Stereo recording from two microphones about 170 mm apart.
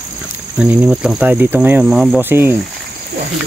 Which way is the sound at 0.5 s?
5° right (ahead or behind).